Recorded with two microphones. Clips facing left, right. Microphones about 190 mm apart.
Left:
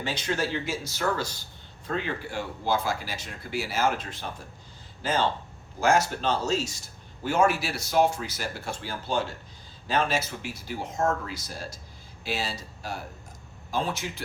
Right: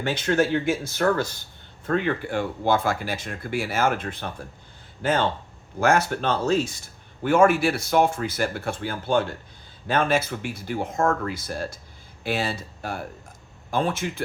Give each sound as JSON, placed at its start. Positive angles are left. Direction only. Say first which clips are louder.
{"t": 0.0, "sound": "speech", "louder": "right 7 dB", "side_deg": -55}
{"t": 5.8, "sound": "speech", "louder": "right 2 dB", "side_deg": -60}